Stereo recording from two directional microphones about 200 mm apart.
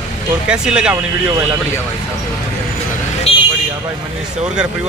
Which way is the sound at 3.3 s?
30° left (ahead or behind).